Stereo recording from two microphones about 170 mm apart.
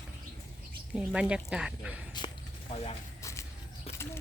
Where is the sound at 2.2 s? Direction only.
25° left (ahead or behind).